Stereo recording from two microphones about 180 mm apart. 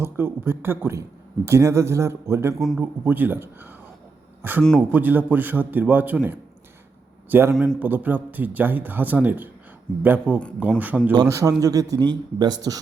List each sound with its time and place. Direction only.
0.0 s a man's voice: 15° right (ahead or behind)
2.6 s a man's voice: centre (ahead or behind)
2.8 s a man's voice: 10° right (ahead or behind)
11.1 s a man's voice: 20° right (ahead or behind)